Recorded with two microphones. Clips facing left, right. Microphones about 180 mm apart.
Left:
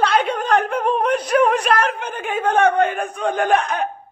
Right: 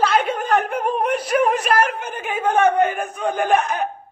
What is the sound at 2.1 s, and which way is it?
Speech, 10° right (ahead or behind).